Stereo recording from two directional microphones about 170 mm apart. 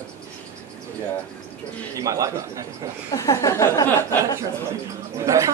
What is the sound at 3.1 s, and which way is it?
Speech, 20° left (ahead or behind).